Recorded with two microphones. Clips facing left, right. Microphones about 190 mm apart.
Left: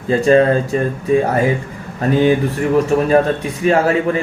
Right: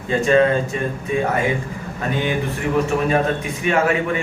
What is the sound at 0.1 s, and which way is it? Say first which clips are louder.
Speech: left 4 dB; 35° left (ahead or behind).